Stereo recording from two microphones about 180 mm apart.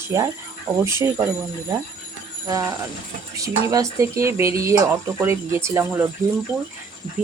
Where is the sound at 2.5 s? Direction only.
20° right (ahead or behind).